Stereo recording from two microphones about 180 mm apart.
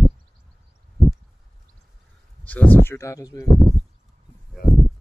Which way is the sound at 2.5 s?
10° left (ahead or behind).